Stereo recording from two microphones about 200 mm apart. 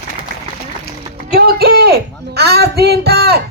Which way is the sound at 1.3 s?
50° right (ahead or behind).